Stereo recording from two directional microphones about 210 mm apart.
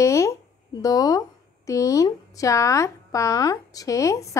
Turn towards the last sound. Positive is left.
turn(degrees=15)  # may be behind; listen again after turning